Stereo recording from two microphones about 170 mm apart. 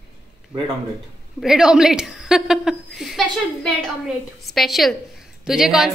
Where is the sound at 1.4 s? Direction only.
5° right (ahead or behind).